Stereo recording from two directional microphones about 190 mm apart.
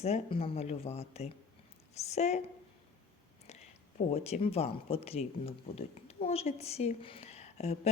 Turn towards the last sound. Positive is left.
turn(degrees=35)  # may be behind; listen again after turning